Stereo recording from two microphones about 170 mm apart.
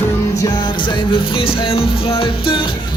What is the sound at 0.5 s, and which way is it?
Music, 25° left (ahead or behind).